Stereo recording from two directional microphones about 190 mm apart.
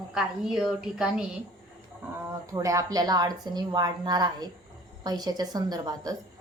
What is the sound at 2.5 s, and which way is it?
A woman's voice, 15° right (ahead or behind).